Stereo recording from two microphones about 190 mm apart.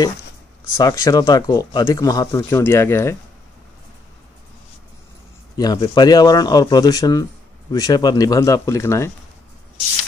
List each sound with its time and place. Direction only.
0.7 s speech: 15° left (ahead or behind)
5.6 s speech: 20° left (ahead or behind)